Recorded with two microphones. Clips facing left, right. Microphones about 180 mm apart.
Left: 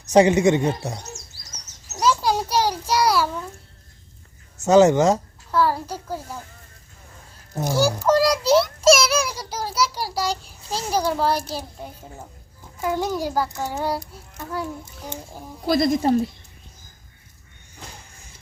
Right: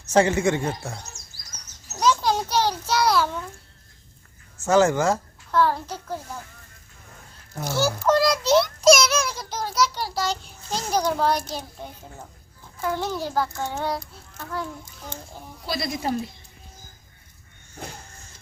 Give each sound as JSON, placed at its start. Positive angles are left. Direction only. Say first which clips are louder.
{"t": 0.1, "sound": "speech", "louder": "left 4 dB", "side_deg": 15}
{"t": 2.0, "sound": "a sound", "louder": "left 1 dB", "side_deg": 10}
{"t": 4.6, "sound": "speech", "louder": "left 5 dB", "side_deg": 20}
{"t": 5.5, "sound": "a child's voice", "louder": "left 1 dB", "side_deg": 10}
{"t": 7.6, "sound": "a child's voice", "louder": "left 3 dB", "side_deg": 10}
{"t": 15.6, "sound": "speech", "louder": "left 10 dB", "side_deg": 50}